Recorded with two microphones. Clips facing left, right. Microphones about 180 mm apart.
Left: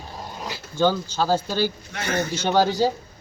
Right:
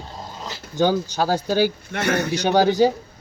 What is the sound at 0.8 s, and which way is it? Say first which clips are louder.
Speech: right 2 dB; 15° right (ahead or behind).